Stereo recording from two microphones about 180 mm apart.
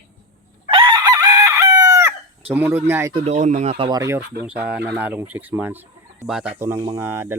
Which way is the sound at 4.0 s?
15° right (ahead or behind).